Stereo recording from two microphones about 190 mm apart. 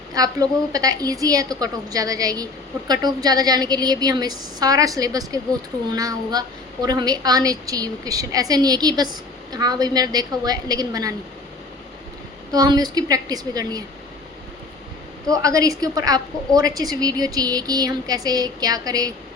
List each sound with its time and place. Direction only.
0.1 s a woman's voice: 20° right (ahead or behind)
12.5 s a woman's voice: 20° right (ahead or behind)
15.3 s a woman's voice: 15° right (ahead or behind)